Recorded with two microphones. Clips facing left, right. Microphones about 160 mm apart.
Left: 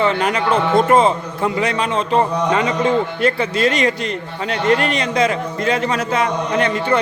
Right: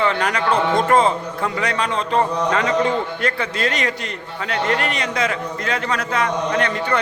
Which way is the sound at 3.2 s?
25° left (ahead or behind).